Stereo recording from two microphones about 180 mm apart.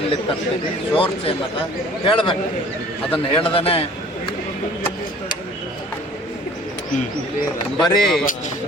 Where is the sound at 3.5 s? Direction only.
30° left (ahead or behind).